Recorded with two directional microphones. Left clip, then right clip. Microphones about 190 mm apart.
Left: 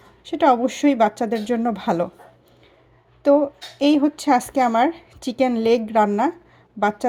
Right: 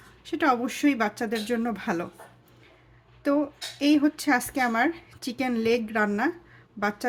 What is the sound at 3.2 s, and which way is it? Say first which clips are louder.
A woman's voice: left 9 dB; 20° left (ahead or behind).